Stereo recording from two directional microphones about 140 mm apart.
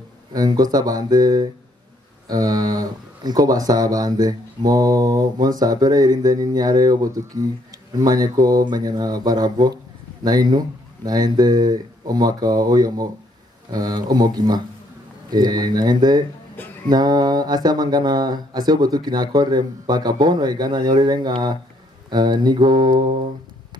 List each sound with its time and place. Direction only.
0.3 s speech: 30° right (ahead or behind)
16.6 s music: 15° left (ahead or behind)
16.9 s speech: 30° right (ahead or behind)